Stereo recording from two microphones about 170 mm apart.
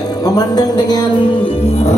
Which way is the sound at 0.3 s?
20° left (ahead or behind).